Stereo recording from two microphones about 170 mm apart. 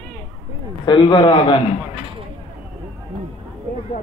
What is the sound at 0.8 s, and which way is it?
Speech, 25° left (ahead or behind).